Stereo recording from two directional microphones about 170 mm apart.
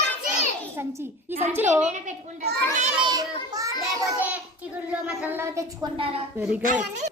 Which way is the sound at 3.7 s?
10° right (ahead or behind).